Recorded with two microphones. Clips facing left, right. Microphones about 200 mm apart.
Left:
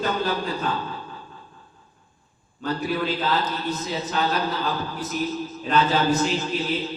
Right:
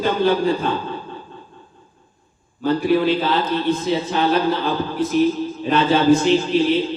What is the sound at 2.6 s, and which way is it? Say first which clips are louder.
A man's voice: right 9 dB; 30° right (ahead or behind).